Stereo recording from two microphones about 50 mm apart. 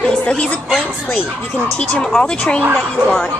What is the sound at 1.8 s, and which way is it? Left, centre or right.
Speech, left.